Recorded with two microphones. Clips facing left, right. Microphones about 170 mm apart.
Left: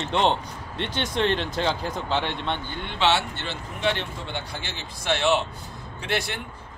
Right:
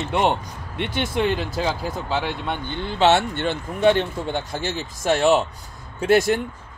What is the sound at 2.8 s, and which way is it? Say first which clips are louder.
Speech: right 6 dB; 45° right (ahead or behind).